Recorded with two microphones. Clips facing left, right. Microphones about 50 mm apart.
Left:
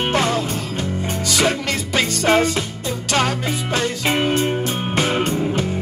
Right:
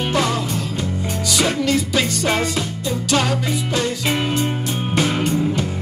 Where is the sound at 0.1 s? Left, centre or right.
Left.